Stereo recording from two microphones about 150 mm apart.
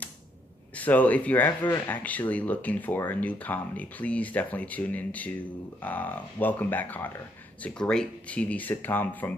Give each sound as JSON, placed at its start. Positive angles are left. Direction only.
{"t": 0.7, "sound": "speech", "side_deg": 10}